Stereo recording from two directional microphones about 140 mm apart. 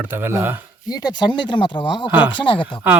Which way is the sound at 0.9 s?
30° left (ahead or behind).